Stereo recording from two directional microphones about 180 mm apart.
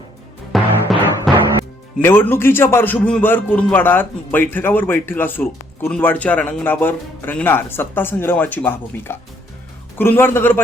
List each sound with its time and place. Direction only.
0.5 s music: centre (ahead or behind)
2.0 s a man's voice: 10° left (ahead or behind)